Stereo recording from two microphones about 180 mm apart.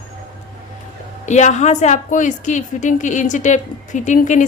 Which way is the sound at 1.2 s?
40° left (ahead or behind).